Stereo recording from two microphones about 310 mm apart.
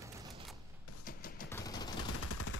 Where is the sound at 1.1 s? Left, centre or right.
Left.